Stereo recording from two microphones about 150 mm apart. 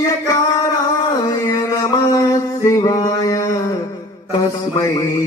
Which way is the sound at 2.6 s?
20° left (ahead or behind).